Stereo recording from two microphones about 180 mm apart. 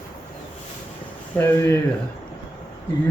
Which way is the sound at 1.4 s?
15° left (ahead or behind).